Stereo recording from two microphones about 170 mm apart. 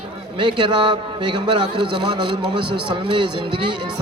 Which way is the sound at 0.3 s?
30° right (ahead or behind).